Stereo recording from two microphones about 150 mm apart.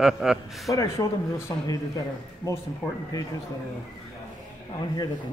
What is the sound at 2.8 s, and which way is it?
Speech, 10° left (ahead or behind).